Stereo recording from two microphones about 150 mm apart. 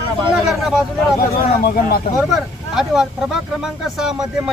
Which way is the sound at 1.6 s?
90° left.